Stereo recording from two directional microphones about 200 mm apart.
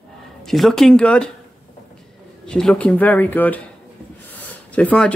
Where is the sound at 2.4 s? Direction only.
5° left (ahead or behind).